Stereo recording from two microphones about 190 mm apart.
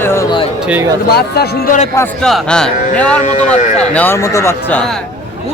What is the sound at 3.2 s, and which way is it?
Speech, 40° left (ahead or behind).